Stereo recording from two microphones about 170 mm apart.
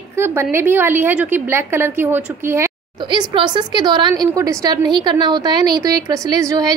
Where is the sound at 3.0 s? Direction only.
25° right (ahead or behind).